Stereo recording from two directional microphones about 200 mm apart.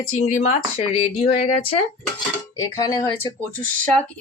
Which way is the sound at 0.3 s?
35° left (ahead or behind).